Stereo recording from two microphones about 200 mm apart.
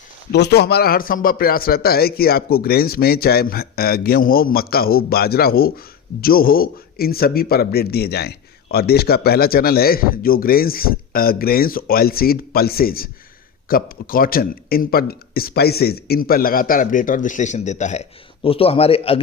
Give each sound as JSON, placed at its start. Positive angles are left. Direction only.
{"t": 0.3, "sound": "a man's voice", "side_deg": 55}